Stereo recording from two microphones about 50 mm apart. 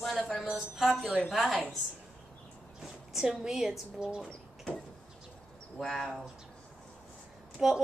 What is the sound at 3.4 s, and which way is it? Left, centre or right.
Speech, centre.